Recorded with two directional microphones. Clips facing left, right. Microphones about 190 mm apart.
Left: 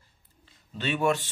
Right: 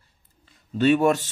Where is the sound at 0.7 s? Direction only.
45° right (ahead or behind).